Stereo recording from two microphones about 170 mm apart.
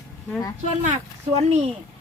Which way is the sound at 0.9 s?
40° right (ahead or behind).